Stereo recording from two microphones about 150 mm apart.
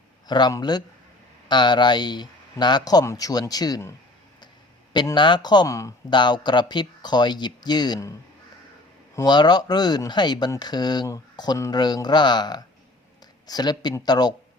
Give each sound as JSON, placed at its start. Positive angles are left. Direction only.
{"t": 0.3, "sound": "speech", "side_deg": 30}
{"t": 4.9, "sound": "speech", "side_deg": 30}
{"t": 9.1, "sound": "speech", "side_deg": 30}